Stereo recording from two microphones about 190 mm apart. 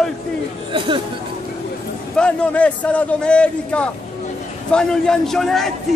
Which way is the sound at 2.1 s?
5° left (ahead or behind).